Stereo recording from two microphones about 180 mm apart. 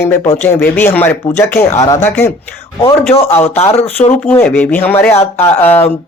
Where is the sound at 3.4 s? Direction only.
35° left (ahead or behind).